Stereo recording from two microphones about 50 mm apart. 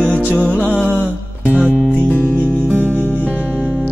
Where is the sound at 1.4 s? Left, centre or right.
Right.